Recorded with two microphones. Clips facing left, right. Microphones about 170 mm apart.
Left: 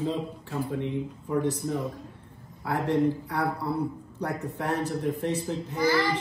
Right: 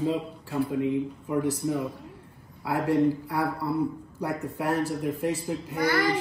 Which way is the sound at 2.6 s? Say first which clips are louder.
Right 2 dB; centre (ahead or behind).